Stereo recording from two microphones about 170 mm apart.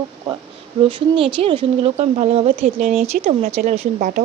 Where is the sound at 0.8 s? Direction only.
30° right (ahead or behind).